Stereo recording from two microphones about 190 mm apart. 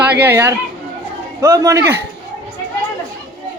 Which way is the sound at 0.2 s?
10° right (ahead or behind).